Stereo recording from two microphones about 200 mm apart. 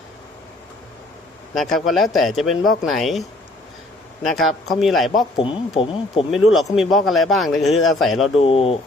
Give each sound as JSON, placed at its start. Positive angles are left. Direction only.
{"t": 1.5, "sound": "speech", "side_deg": 0}
{"t": 5.4, "sound": "speech", "side_deg": 25}
{"t": 6.3, "sound": "speech", "side_deg": 0}
{"t": 8.4, "sound": "speech", "side_deg": 30}